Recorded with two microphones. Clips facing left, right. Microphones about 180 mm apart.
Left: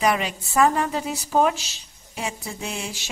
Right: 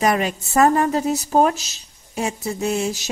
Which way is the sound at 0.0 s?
45° right (ahead or behind).